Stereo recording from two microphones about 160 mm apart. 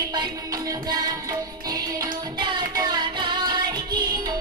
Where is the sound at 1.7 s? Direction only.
25° right (ahead or behind).